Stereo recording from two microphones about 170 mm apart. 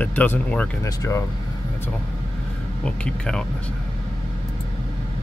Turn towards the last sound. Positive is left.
turn(degrees=5)  # may be behind; listen again after turning